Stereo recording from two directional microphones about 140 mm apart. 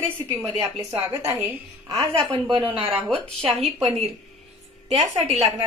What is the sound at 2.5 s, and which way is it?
Speech, 35° right (ahead or behind).